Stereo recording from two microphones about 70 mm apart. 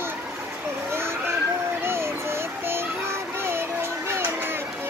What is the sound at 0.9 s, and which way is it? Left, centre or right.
Vehicle, right.